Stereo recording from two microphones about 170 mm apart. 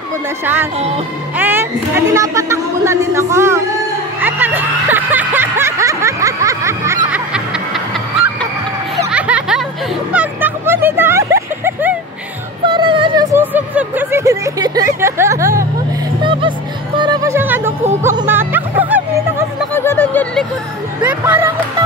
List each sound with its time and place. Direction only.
0.7 s speech: 40° right (ahead or behind)
1.3 s speech: 10° right (ahead or behind)
4.2 s snicker: 10° right (ahead or behind)
7.1 s snicker: 5° right (ahead or behind)
9.1 s music: 5° right (ahead or behind)
10.1 s a sound: 10° right (ahead or behind)
12.6 s a sound: 30° right (ahead or behind)
16.2 s music: 30° right (ahead or behind); by 19.4 s 10° right (ahead or behind)
19.7 s a sound: 15° left (ahead or behind)
21.0 s music: 10° right (ahead or behind)